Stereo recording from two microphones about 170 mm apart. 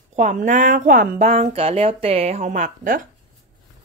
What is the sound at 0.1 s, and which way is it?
Speech, 45° right (ahead or behind).